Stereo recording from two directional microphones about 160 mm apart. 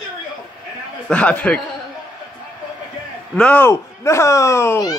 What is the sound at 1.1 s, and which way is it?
Speech, 10° left (ahead or behind).